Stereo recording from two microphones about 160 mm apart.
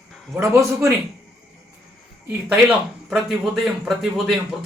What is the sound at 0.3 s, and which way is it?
Speech, 15° right (ahead or behind).